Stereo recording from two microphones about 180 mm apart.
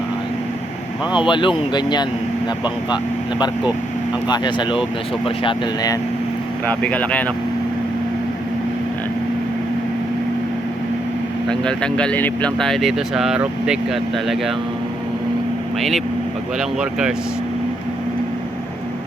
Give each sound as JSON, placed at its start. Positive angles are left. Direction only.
{"t": 1.1, "sound": "speech", "side_deg": 25}
{"t": 6.7, "sound": "speech", "side_deg": 10}
{"t": 11.4, "sound": "speech", "side_deg": 5}
{"t": 16.6, "sound": "speech", "side_deg": -5}